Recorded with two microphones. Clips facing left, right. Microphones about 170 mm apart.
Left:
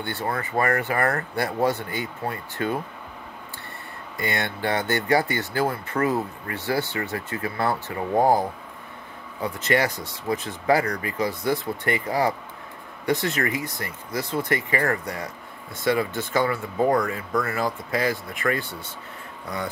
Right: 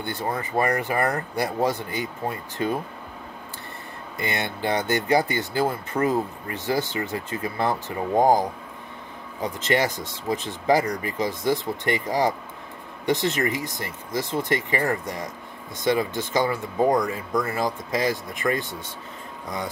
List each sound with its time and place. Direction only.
0.3 s speech: 20° right (ahead or behind)
4.2 s speech: 15° right (ahead or behind)
9.4 s speech: 20° right (ahead or behind)